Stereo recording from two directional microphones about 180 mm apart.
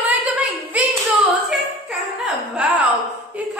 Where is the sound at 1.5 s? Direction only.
Centre (ahead or behind).